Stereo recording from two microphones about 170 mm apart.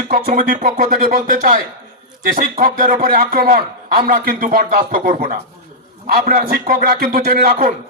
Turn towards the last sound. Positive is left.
turn(degrees=-55)  # may be behind; listen again after turning